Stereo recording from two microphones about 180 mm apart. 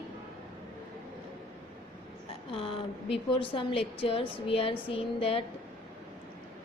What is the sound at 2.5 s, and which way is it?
Speech, 30° left (ahead or behind).